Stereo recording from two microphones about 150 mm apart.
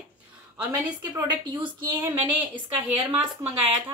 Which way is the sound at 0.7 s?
25° right (ahead or behind).